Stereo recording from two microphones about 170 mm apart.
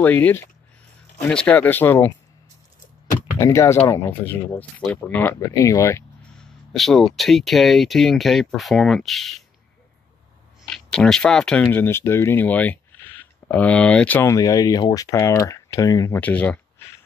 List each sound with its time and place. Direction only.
0.0 s speech: 10° left (ahead or behind)
3.3 s speech: 15° left (ahead or behind)
6.7 s speech: centre (ahead or behind)
10.6 s speech: 5° left (ahead or behind)